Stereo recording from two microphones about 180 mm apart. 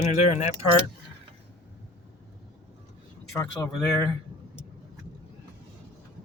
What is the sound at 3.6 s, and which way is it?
Speech, 10° left (ahead or behind).